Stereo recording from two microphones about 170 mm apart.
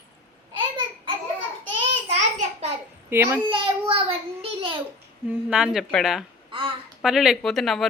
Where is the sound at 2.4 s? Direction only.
40° right (ahead or behind).